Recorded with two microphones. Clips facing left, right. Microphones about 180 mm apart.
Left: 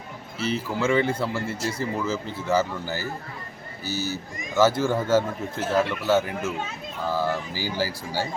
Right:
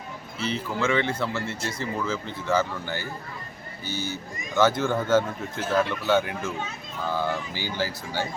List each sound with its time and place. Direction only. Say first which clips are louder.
0.4 s speech: left 2 dB; 5° left (ahead or behind)